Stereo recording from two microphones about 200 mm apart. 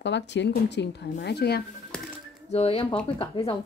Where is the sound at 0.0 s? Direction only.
60° left (ahead or behind).